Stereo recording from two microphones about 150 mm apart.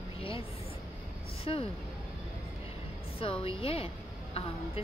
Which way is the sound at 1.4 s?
40° left (ahead or behind).